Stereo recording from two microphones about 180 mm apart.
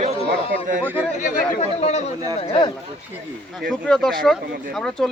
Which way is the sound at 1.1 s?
40° left (ahead or behind).